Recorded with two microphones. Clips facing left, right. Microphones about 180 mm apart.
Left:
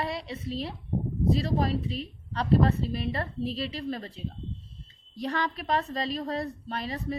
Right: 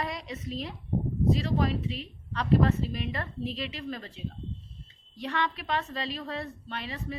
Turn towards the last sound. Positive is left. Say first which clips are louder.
# left 4 dB
turn(degrees=35)  # may be behind; listen again after turning